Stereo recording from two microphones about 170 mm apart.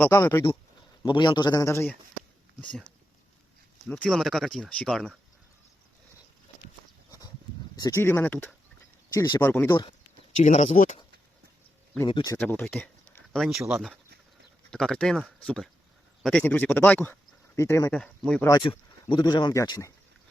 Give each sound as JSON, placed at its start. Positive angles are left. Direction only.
{"t": 0.0, "sound": "speech", "side_deg": 15}
{"t": 1.0, "sound": "speech", "side_deg": 25}
{"t": 3.8, "sound": "speech", "side_deg": 5}
{"t": 7.8, "sound": "speech", "side_deg": 20}
{"t": 9.1, "sound": "speech", "side_deg": 25}
{"t": 9.4, "sound": "speech", "side_deg": 15}
{"t": 10.4, "sound": "speech", "side_deg": 45}
{"t": 12.0, "sound": "speech", "side_deg": 25}
{"t": 12.4, "sound": "speech", "side_deg": 10}
{"t": 18.0, "sound": "speech", "side_deg": 5}
{"t": 18.4, "sound": "speech", "side_deg": 25}